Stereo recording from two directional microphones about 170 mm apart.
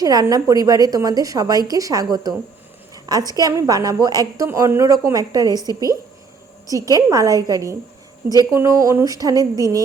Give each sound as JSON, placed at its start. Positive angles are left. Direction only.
{"t": 0.0, "sound": "a woman's voice", "side_deg": -20}